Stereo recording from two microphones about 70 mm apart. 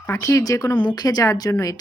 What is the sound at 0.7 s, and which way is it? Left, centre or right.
Speech, left.